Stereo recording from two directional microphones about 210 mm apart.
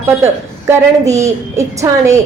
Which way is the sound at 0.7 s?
15° right (ahead or behind).